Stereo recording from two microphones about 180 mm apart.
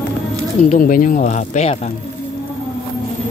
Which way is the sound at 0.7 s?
50° left (ahead or behind).